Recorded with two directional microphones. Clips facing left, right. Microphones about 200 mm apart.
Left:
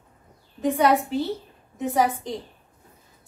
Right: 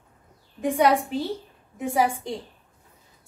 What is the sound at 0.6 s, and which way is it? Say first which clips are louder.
A woman's voice: even; 10° right (ahead or behind).